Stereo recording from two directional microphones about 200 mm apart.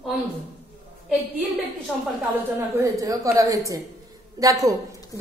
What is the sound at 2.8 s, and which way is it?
A woman's voice, 15° right (ahead or behind).